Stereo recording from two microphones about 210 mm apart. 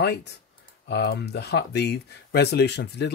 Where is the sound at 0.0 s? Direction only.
50° left (ahead or behind).